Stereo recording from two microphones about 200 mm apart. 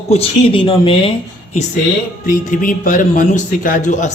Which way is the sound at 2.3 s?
40° left (ahead or behind).